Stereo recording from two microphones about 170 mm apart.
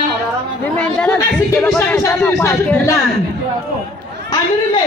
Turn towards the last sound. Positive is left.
turn(degrees=15)  # may be behind; listen again after turning